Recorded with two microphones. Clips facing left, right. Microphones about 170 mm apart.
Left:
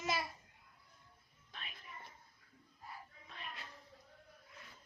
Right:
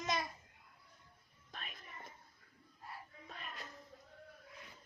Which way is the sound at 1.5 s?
45° right (ahead or behind).